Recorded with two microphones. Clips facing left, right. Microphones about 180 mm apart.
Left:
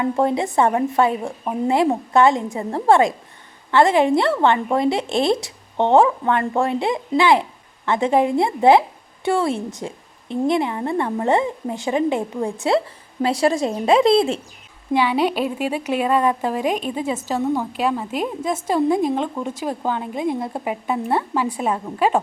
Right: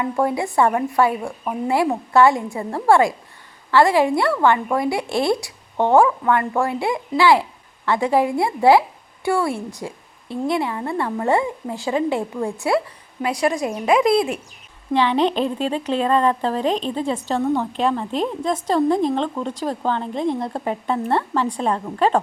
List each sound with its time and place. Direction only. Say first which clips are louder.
0.0 s a woman's voice: left 2 dB; 25° left (ahead or behind)
14.9 s a woman's voice: right 1 dB; 10° left (ahead or behind)